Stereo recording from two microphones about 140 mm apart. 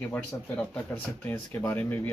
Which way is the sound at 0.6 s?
10° left (ahead or behind).